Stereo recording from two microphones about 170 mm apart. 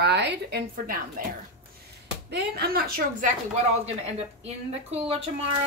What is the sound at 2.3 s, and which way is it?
Speech, 65° right (ahead or behind).